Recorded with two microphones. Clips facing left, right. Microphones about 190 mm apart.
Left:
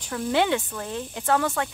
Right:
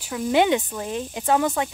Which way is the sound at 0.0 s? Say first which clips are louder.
Right 3 dB; 10° right (ahead or behind).